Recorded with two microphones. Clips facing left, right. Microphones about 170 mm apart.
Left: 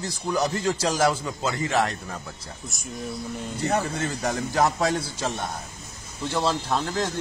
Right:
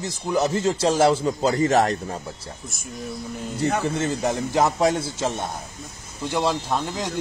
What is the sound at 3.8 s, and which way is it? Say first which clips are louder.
A man's voice: right 4 dB; 25° right (ahead or behind).